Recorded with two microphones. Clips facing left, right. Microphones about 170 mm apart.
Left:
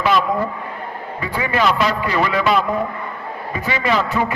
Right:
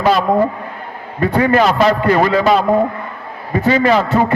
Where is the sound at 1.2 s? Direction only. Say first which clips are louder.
Right 7 dB; 50° right (ahead or behind).